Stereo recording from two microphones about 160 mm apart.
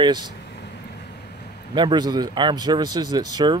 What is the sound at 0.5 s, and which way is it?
Vehicle, 90° left.